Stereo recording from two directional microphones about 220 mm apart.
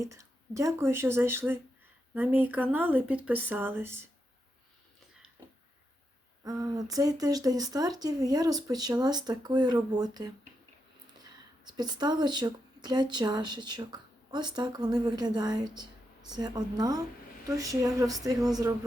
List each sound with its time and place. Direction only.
0.0 s speech: 15° right (ahead or behind)
6.4 s speech: 15° right (ahead or behind)